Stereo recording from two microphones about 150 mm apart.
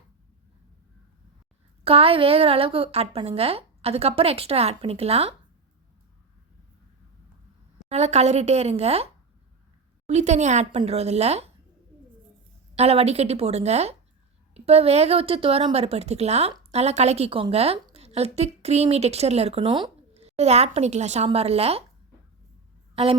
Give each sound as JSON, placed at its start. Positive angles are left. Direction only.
{"t": 1.8, "sound": "a woman's voice", "side_deg": -40}
{"t": 7.9, "sound": "speech", "side_deg": -45}
{"t": 10.1, "sound": "speech", "side_deg": -50}
{"t": 12.7, "sound": "speech", "side_deg": -45}